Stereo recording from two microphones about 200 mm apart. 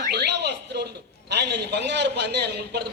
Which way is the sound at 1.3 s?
55° right (ahead or behind).